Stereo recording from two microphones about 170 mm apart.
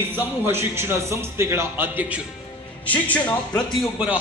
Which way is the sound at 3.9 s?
5° right (ahead or behind).